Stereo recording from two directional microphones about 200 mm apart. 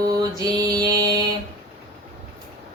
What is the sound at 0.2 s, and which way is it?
Mantra, 20° right (ahead or behind).